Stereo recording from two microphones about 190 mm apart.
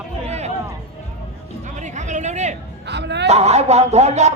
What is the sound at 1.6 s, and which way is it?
Speech, 40° right (ahead or behind).